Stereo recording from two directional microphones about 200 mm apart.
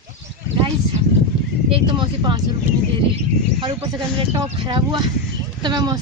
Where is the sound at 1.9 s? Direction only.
25° right (ahead or behind).